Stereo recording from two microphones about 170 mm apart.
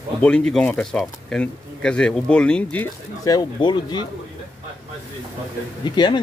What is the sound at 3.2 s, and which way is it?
Speech, 20° left (ahead or behind).